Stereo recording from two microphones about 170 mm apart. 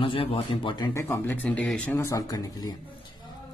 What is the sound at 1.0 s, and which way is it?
Speech, 15° left (ahead or behind).